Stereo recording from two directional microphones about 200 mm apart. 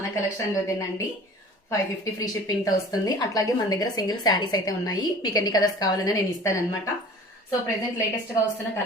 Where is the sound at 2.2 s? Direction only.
20° left (ahead or behind).